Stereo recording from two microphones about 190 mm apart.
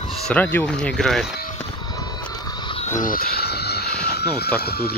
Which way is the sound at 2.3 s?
20° left (ahead or behind).